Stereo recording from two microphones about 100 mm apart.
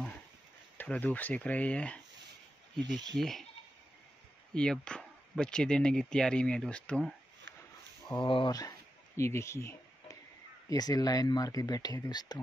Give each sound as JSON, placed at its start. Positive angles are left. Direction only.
{"t": 0.7, "sound": "speech", "side_deg": 15}
{"t": 2.8, "sound": "speech", "side_deg": -45}
{"t": 3.2, "sound": "speech", "side_deg": 5}
{"t": 4.6, "sound": "speech", "side_deg": 10}
{"t": 8.2, "sound": "speech", "side_deg": 55}
{"t": 8.5, "sound": "speech", "side_deg": 40}
{"t": 10.7, "sound": "speech", "side_deg": 40}